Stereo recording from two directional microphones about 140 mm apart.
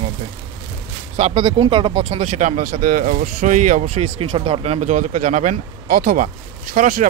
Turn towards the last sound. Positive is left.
turn(degrees=-65)  # may be behind; listen again after turning